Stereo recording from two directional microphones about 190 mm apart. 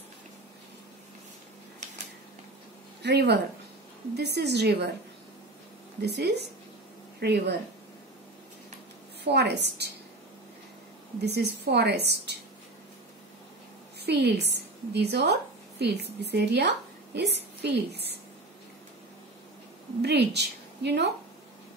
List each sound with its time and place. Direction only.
3.0 s a woman's voice: 60° right (ahead or behind)
5.9 s a woman's voice: 60° right (ahead or behind)
9.2 s a woman's voice: 60° right (ahead or behind)
11.1 s a woman's voice: 60° right (ahead or behind)
14.0 s a woman's voice: 60° right (ahead or behind)
20.0 s a woman's voice: 60° right (ahead or behind)